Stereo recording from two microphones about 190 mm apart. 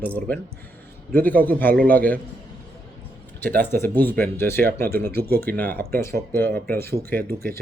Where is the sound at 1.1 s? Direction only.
10° left (ahead or behind).